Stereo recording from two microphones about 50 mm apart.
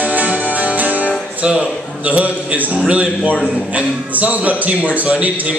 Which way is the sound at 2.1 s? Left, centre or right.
Right.